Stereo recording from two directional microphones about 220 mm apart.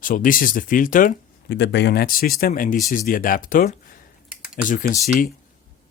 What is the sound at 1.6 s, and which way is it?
Speech, 50° left (ahead or behind).